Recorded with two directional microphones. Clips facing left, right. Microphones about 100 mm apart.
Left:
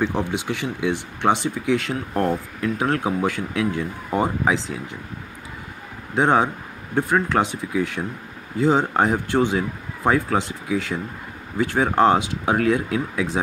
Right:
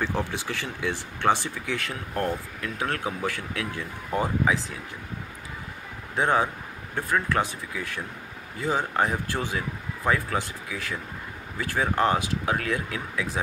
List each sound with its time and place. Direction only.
0.0 s speech: 20° left (ahead or behind)
6.1 s speech: 25° left (ahead or behind)